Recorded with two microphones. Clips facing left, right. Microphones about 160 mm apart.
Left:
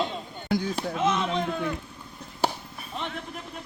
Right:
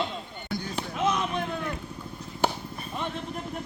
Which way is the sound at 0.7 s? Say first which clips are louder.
Left 2 dB; 25° left (ahead or behind).